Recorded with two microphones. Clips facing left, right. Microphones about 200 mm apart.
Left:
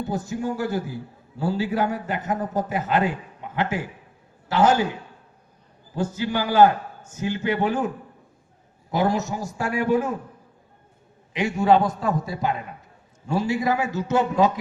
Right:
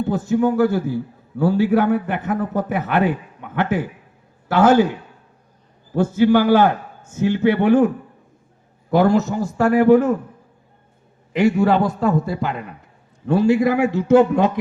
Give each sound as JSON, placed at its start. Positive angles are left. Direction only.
{"t": 0.1, "sound": "a man's voice", "side_deg": -60}
{"t": 5.9, "sound": "a man's voice", "side_deg": -60}
{"t": 8.9, "sound": "a man's voice", "side_deg": -60}
{"t": 11.3, "sound": "a man's voice", "side_deg": -60}